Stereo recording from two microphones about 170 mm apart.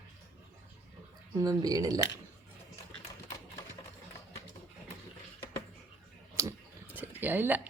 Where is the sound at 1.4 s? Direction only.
20° right (ahead or behind).